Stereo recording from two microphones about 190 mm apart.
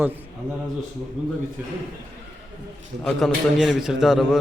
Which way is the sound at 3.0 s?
Centre (ahead or behind).